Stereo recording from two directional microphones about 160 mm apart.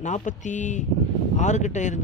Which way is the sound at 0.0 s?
50° left (ahead or behind).